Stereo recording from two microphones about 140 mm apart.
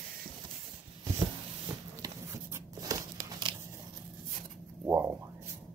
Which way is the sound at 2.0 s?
25° right (ahead or behind).